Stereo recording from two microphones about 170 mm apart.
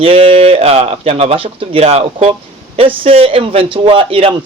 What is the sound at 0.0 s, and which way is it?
A man's voice, 35° right (ahead or behind).